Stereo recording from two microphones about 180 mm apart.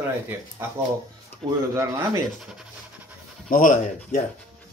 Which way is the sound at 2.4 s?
5° right (ahead or behind).